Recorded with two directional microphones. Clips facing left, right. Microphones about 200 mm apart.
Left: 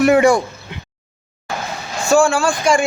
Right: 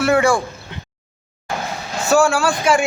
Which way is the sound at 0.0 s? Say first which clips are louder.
Left 4 dB; 20° left (ahead or behind).